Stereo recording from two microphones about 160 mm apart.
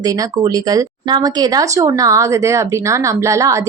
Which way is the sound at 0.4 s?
25° right (ahead or behind).